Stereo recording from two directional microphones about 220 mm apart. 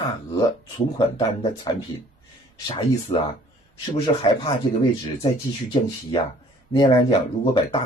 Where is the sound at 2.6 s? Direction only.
25° left (ahead or behind).